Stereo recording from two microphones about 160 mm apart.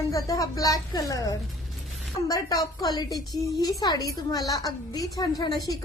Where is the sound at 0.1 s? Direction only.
20° left (ahead or behind).